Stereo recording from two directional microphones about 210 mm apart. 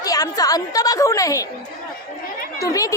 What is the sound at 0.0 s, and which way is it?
A woman's voice, 15° left (ahead or behind).